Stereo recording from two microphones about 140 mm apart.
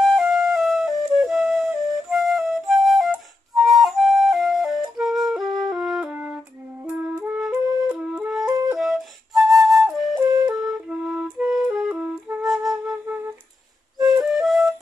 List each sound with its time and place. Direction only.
0.0 s flute: centre (ahead or behind)
6.9 s music: 15° right (ahead or behind)
7.4 s flute: 10° right (ahead or behind)
8.5 s flute: 25° right (ahead or behind)
8.7 s flute: centre (ahead or behind)
10.2 s flute: 25° right (ahead or behind)
10.5 s music: 5° right (ahead or behind)
14.0 s flute: 5° right (ahead or behind)